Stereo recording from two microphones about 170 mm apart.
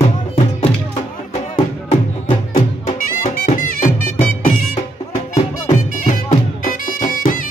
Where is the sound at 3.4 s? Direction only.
50° left (ahead or behind).